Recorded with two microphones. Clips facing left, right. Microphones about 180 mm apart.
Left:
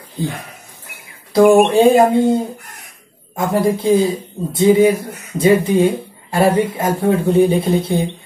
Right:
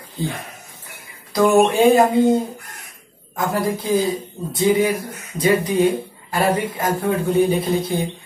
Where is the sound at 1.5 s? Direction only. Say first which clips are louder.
Left 3 dB; 10° left (ahead or behind).